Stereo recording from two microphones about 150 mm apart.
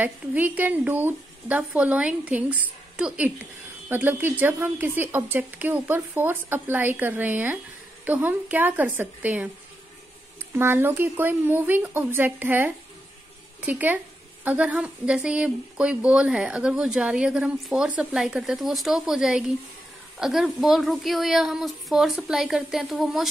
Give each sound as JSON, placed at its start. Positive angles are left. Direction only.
{"t": 0.0, "sound": "speech", "side_deg": -10}
{"t": 10.5, "sound": "a woman's voice", "side_deg": -15}